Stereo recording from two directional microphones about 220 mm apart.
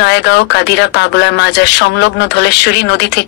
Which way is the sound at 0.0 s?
50° left (ahead or behind).